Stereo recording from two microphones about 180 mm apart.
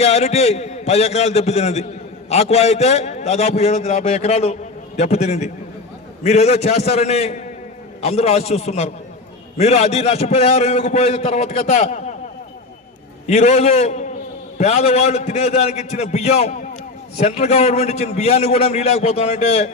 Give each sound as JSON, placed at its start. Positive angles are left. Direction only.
{"t": 0.0, "sound": "a man's voice", "side_deg": 35}
{"t": 13.2, "sound": "a man's voice", "side_deg": 40}